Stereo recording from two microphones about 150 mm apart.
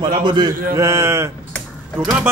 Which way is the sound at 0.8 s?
20° right (ahead or behind).